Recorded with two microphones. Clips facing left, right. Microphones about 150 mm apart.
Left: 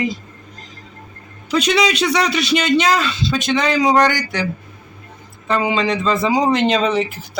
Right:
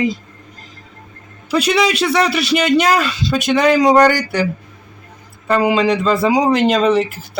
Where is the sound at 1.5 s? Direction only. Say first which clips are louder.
Right 1 dB; 5° right (ahead or behind).